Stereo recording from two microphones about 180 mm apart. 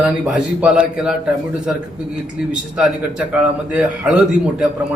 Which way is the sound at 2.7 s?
5° right (ahead or behind).